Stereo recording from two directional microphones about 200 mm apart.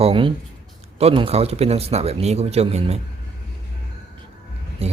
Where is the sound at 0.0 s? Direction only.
25° right (ahead or behind).